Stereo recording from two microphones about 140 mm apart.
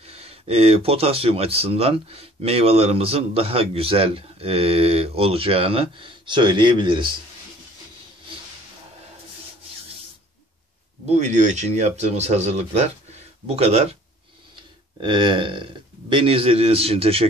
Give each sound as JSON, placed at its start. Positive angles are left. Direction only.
{"t": 0.0, "sound": "speech", "side_deg": -45}
{"t": 11.1, "sound": "speech", "side_deg": -60}
{"t": 14.5, "sound": "speech", "side_deg": -35}